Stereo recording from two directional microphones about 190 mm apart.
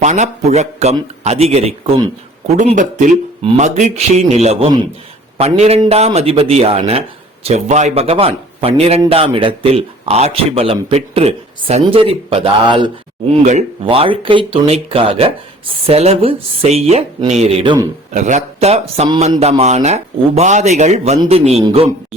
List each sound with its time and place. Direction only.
0.0 s a man's voice: 35° right (ahead or behind)
13.4 s a man's voice: 40° right (ahead or behind)